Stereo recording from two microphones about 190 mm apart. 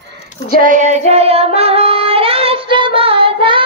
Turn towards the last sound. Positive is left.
turn(degrees=-25)  # may be behind; listen again after turning